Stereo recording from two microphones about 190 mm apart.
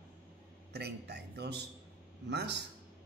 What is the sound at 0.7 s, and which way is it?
A man's voice, 60° right (ahead or behind).